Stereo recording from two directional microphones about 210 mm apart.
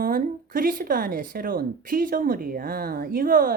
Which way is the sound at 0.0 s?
40° right (ahead or behind).